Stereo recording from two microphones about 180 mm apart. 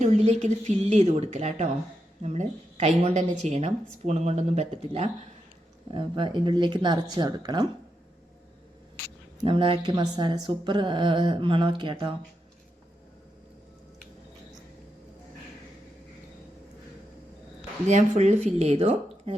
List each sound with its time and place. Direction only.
0.0 s a woman's voice: 35° right (ahead or behind)
9.4 s speech: 30° right (ahead or behind)
17.8 s a woman's voice: 40° right (ahead or behind)